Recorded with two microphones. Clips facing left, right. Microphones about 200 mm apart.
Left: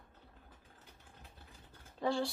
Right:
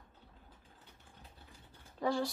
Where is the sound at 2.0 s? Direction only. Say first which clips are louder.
Right 1 dB; 30° left (ahead or behind).